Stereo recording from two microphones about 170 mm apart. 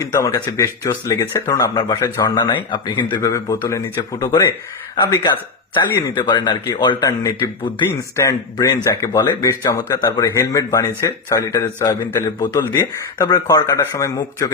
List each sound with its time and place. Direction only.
0.0 s speech: 15° left (ahead or behind)
6.1 s speech: 25° left (ahead or behind)